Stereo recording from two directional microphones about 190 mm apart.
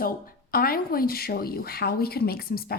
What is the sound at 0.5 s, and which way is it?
A woman's voice, 50° left (ahead or behind).